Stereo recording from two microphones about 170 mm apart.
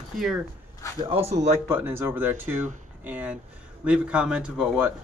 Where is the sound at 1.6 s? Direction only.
15° right (ahead or behind).